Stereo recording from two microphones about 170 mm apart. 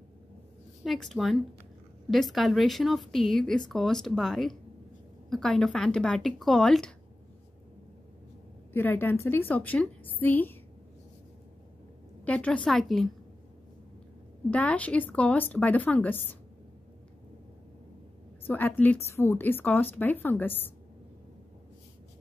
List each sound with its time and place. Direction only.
0.8 s speech: centre (ahead or behind)
8.7 s a woman's voice: 10° left (ahead or behind)
12.3 s speech: 5° left (ahead or behind)
14.5 s a woman's voice: 10° left (ahead or behind)
18.5 s a woman's voice: 10° left (ahead or behind)